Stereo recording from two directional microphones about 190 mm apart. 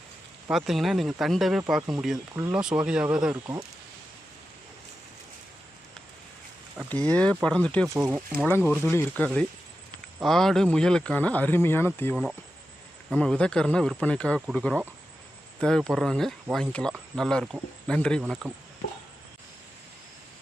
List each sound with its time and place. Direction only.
0.5 s speech: centre (ahead or behind)
2.1 s speech: 15° right (ahead or behind)
2.6 s speech: 5° right (ahead or behind)
3.4 s speech: 20° right (ahead or behind)
6.8 s speech: 5° left (ahead or behind)
7.9 s speech: 5° right (ahead or behind)
8.4 s speech: 10° left (ahead or behind)
13.1 s speech: 5° left (ahead or behind)
18.2 s speech: 5° right (ahead or behind)